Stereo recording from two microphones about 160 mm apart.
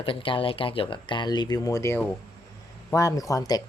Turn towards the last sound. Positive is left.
turn(degrees=25)  # may be behind; listen again after turning